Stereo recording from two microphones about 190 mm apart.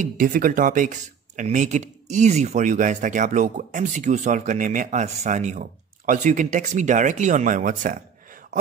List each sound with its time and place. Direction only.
0.0 s speech: 45° right (ahead or behind)